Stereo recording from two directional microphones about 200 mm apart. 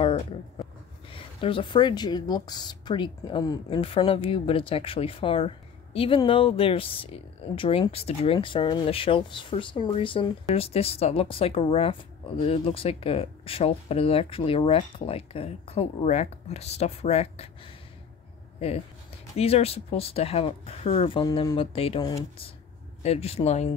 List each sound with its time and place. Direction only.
0.0 s speech: 25° left (ahead or behind)
18.6 s speech: 30° left (ahead or behind)